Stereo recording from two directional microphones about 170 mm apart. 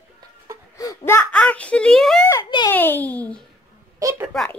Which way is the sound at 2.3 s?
25° left (ahead or behind).